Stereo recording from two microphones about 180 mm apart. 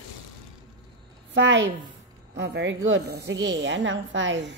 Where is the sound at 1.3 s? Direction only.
90° right.